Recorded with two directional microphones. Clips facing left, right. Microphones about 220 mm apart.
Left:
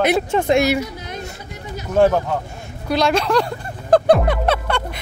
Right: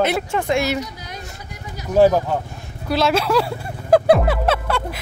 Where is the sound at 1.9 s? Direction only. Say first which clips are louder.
Right 1 dB; 5° right (ahead or behind).